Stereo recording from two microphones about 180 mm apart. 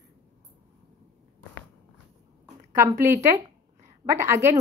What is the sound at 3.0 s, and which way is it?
A woman's voice, 15° right (ahead or behind).